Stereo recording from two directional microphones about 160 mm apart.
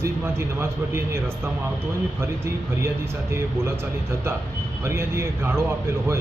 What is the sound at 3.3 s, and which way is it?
Speech, 15° right (ahead or behind).